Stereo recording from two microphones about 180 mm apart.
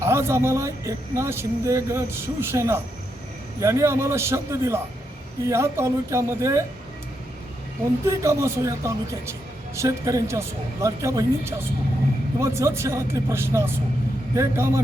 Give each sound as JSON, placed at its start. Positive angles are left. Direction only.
{"t": 0.0, "sound": "speech", "side_deg": -15}
{"t": 8.0, "sound": "speech", "side_deg": -15}